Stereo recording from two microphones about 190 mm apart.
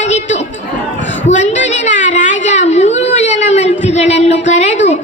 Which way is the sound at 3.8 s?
35° left (ahead or behind).